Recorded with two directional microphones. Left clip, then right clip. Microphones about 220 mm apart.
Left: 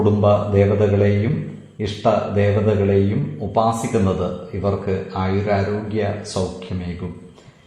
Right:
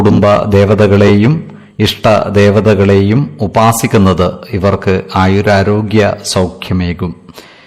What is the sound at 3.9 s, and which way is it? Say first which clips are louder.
Speech: right 10 dB; 45° right (ahead or behind).